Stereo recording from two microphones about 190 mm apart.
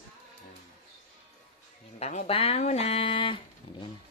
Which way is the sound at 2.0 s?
35° left (ahead or behind).